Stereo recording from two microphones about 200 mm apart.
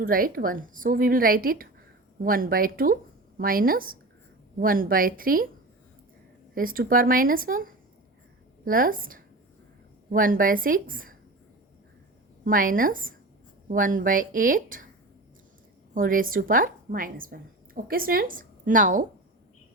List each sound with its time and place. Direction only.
0.0 s a woman's voice: 45° right (ahead or behind)
6.5 s a woman's voice: 45° right (ahead or behind)
12.5 s a woman's voice: 45° right (ahead or behind)
16.0 s a woman's voice: 45° right (ahead or behind)